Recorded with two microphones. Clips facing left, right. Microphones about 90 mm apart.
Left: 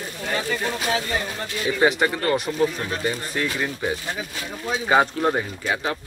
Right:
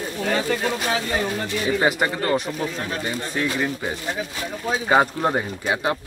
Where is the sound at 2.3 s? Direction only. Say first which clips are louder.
Left 2 dB; centre (ahead or behind).